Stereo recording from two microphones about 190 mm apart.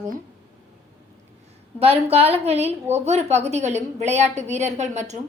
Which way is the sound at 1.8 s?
30° right (ahead or behind).